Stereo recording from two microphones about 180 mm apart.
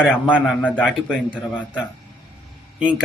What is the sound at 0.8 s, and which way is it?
Speech, 5° left (ahead or behind).